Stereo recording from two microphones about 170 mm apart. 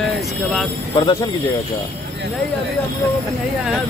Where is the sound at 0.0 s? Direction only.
Centre (ahead or behind).